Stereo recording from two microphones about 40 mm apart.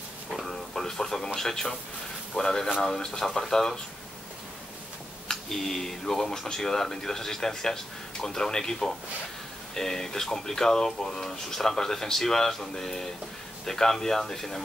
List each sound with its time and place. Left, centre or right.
0.3 s a sound: centre
0.7 s speech: centre
5.3 s speech: centre